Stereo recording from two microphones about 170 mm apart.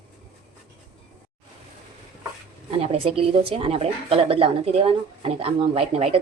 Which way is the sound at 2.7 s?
35° right (ahead or behind).